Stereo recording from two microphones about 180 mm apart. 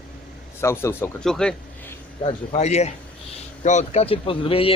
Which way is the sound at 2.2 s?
35° left (ahead or behind).